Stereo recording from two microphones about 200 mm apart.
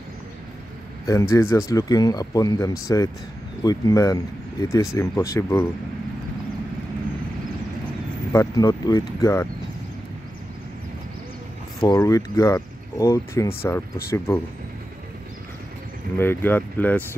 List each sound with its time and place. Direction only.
1.0 s speech: 15° left (ahead or behind)
8.3 s speech: 15° left (ahead or behind)
11.8 s speech: 15° left (ahead or behind)
16.2 s speech: 10° left (ahead or behind)